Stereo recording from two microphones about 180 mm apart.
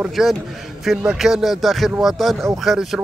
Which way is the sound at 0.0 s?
Centre (ahead or behind).